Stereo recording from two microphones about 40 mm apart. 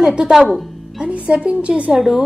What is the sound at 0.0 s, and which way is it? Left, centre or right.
Speech, centre.